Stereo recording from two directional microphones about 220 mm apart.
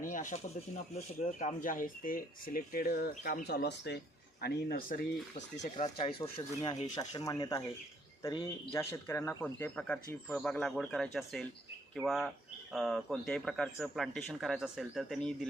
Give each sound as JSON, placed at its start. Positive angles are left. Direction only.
{"t": 0.0, "sound": "a sound", "side_deg": 35}
{"t": 0.9, "sound": "speech", "side_deg": 30}
{"t": 5.7, "sound": "speech", "side_deg": 25}